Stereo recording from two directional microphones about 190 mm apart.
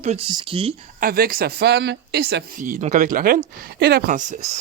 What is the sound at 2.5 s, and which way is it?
Speech, 45° right (ahead or behind).